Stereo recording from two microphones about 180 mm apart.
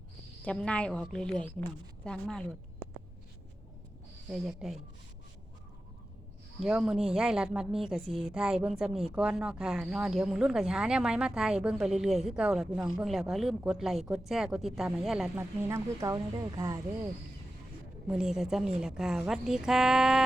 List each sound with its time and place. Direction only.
0.4 s speech: 5° left (ahead or behind)
4.3 s speech: centre (ahead or behind)
6.6 s speech: 5° right (ahead or behind)
15.4 s speech: 15° right (ahead or behind)
18.1 s speech: 5° right (ahead or behind)